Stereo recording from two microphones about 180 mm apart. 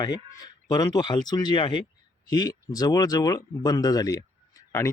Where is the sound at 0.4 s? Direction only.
20° left (ahead or behind).